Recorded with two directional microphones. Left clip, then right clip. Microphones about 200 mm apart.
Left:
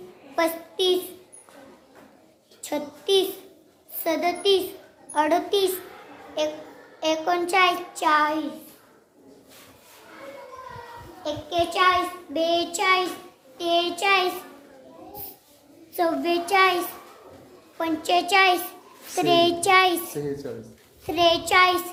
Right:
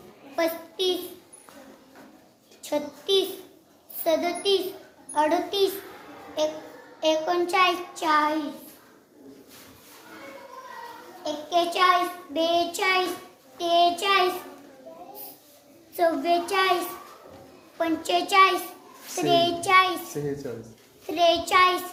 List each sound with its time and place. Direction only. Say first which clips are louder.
0.3 s a sound: left 2 dB; 50° left (ahead or behind)
2.6 s a woman's voice: left 1 dB; 50° left (ahead or behind)
4.0 s a sound: left 1 dB; 45° left (ahead or behind)
5.1 s a child's voice: left 2 dB; 50° left (ahead or behind)
7.0 s child singing: even; 50° left (ahead or behind)
11.2 s a child's voice: even; 45° left (ahead or behind)
16.0 s a child's voice: right 1 dB; 50° left (ahead or behind)
17.7 s a child's voice: left 2 dB; 45° left (ahead or behind)
21.1 s a child's voice: left 1 dB; 50° left (ahead or behind)